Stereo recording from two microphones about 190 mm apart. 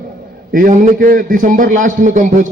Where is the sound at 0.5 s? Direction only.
45° right (ahead or behind).